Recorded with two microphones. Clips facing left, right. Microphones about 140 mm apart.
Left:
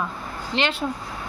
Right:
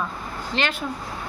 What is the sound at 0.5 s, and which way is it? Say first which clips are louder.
Speech: left 2 dB; 20° left (ahead or behind).